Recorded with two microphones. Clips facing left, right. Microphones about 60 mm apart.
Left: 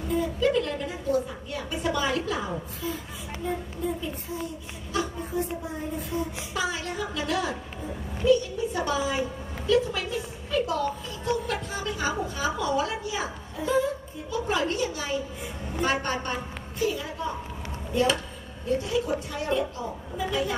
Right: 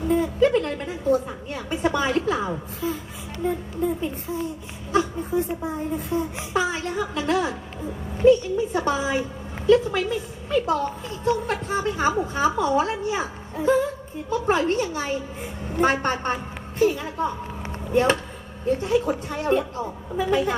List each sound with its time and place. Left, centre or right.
0.1 s a woman's voice: right
5.9 s a woman's voice: right